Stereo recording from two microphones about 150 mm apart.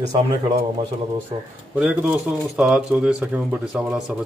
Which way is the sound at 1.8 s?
5° right (ahead or behind).